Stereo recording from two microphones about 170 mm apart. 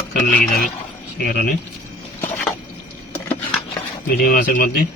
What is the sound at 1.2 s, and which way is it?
Speech, 60° left (ahead or behind).